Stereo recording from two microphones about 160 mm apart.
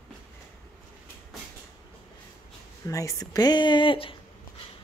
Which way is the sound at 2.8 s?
20° left (ahead or behind).